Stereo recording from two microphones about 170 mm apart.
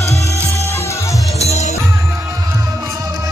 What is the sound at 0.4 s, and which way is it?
Music, 15° left (ahead or behind).